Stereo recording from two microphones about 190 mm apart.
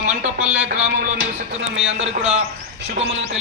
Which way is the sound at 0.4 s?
5° right (ahead or behind).